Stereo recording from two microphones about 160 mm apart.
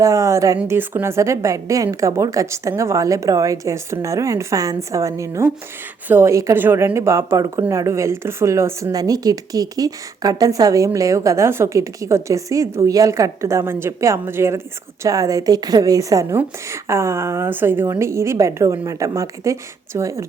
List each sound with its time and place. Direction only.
0.0 s a woman's voice: 20° right (ahead or behind)